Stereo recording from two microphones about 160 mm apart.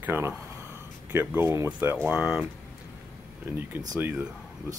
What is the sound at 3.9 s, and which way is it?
Speech, 10° right (ahead or behind).